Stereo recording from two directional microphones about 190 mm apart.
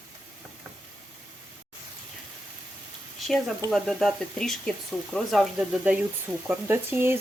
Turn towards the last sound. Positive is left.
turn(degrees=-10)  # may be behind; listen again after turning